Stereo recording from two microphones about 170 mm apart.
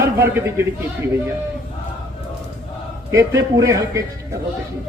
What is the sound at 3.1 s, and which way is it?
Speech, 15° right (ahead or behind).